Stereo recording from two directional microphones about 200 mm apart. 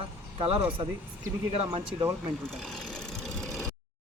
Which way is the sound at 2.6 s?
Centre (ahead or behind).